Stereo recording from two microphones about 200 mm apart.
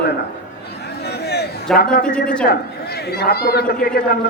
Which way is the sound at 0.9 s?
55° left (ahead or behind).